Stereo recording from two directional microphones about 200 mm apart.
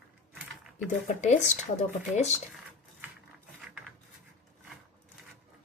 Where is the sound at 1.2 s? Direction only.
35° left (ahead or behind).